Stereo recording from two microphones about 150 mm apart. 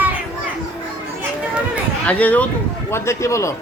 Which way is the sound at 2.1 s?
10° left (ahead or behind).